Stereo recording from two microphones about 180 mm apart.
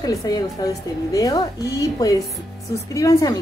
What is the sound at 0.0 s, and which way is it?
A woman's voice, 20° left (ahead or behind).